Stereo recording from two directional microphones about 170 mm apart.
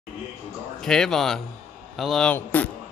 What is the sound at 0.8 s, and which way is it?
Speech, 5° left (ahead or behind).